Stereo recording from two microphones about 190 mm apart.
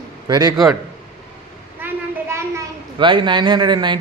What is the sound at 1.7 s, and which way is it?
Child singing, 10° right (ahead or behind).